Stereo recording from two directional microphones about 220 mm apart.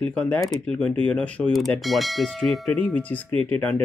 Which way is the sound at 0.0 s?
5° left (ahead or behind).